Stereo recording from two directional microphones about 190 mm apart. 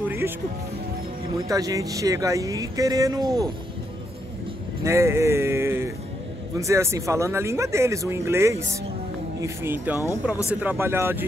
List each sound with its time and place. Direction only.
1.5 s speech: 15° right (ahead or behind)
4.8 s speech: 15° right (ahead or behind)